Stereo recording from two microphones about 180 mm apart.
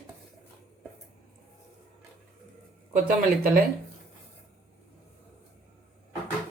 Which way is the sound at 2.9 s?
55° right (ahead or behind).